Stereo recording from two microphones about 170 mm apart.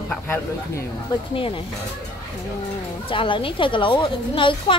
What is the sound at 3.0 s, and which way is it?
Speech, 30° left (ahead or behind).